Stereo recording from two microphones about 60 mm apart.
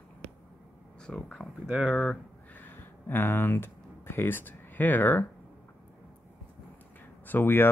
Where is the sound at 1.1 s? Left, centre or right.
Centre.